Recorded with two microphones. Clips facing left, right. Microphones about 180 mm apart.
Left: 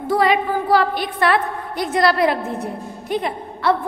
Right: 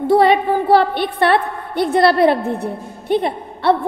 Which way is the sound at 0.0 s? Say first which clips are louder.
Right 5 dB; 30° right (ahead or behind).